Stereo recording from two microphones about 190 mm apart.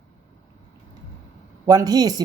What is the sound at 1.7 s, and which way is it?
Speech, 20° right (ahead or behind).